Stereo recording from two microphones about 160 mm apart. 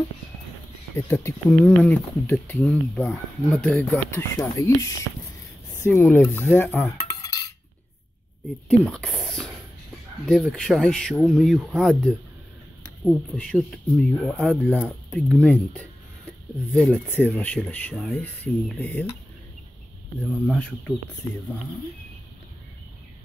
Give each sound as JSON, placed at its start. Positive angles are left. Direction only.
{"t": 0.9, "sound": "speech", "side_deg": 15}
{"t": 7.2, "sound": "cutlery", "side_deg": 25}
{"t": 8.6, "sound": "speech", "side_deg": 5}
{"t": 20.2, "sound": "speech", "side_deg": 5}